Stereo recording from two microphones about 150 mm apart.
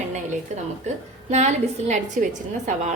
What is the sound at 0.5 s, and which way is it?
Speech, 50° right (ahead or behind).